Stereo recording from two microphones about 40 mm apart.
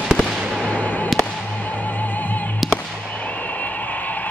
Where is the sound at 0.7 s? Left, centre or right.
Left.